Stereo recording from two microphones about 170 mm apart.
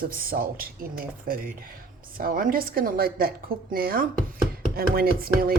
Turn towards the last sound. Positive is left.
turn(degrees=-60)  # may be behind; listen again after turning